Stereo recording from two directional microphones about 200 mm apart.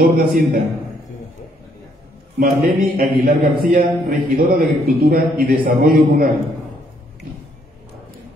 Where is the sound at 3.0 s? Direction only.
45° right (ahead or behind).